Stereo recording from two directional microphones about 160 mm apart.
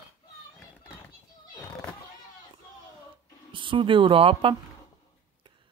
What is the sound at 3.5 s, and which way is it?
Speech, 30° right (ahead or behind).